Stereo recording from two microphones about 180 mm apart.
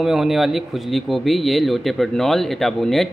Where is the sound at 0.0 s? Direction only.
Centre (ahead or behind).